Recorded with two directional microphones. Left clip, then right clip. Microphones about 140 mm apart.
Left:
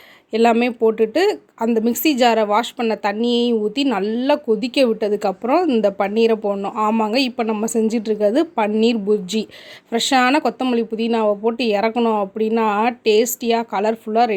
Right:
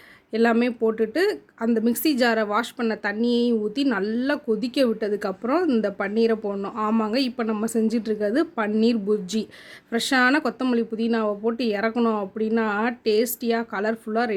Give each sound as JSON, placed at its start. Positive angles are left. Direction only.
{"t": 0.6, "sound": "speech", "side_deg": 10}